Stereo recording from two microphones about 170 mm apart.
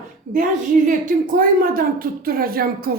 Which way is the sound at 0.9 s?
50° right (ahead or behind).